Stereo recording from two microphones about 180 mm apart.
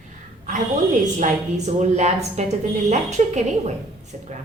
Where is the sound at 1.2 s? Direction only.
40° right (ahead or behind).